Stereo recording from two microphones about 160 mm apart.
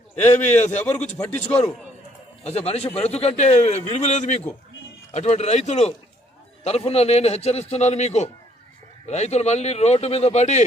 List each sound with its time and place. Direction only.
0.3 s a man's voice: 45° left (ahead or behind)